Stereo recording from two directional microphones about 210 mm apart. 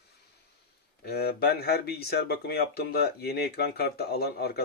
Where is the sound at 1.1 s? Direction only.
50° left (ahead or behind).